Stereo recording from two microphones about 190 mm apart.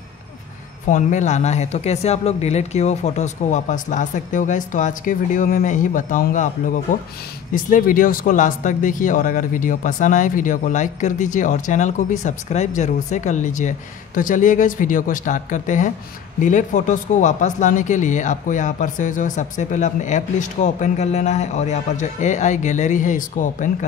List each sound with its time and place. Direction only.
0.8 s speech: 40° left (ahead or behind)
7.5 s speech: 45° left (ahead or behind)